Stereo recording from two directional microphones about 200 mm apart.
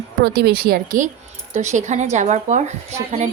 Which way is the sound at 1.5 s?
35° right (ahead or behind).